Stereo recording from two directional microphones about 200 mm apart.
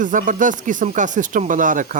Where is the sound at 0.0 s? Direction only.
40° right (ahead or behind).